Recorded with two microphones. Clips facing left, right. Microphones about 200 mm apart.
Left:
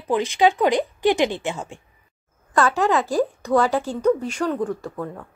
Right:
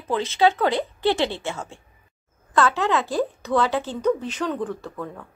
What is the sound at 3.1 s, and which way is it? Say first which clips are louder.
Speech: left 3 dB; 15° left (ahead or behind).